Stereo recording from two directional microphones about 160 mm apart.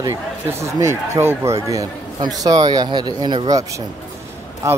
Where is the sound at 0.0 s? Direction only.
15° right (ahead or behind).